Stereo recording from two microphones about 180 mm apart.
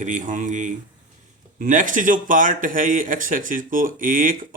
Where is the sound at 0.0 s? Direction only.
45° right (ahead or behind).